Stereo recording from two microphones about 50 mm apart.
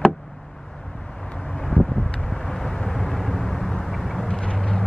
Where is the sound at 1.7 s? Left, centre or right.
Left.